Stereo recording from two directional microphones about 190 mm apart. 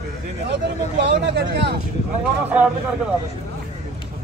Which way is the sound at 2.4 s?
5° right (ahead or behind).